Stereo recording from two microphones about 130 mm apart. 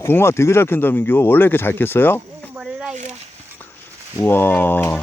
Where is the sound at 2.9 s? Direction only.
65° right (ahead or behind).